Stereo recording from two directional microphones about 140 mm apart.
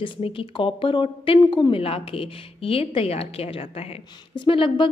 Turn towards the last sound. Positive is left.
turn(degrees=40)  # may be behind; listen again after turning